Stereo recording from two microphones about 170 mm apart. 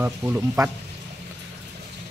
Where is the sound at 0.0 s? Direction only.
15° right (ahead or behind).